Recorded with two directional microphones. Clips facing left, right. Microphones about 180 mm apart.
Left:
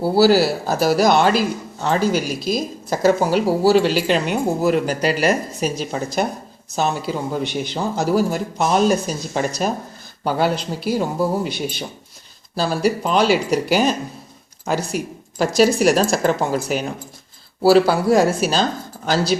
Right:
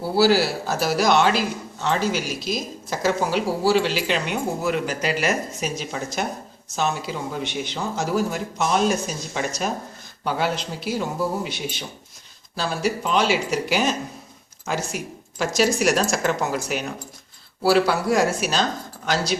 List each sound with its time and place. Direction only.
0.2 s speech: 40° left (ahead or behind)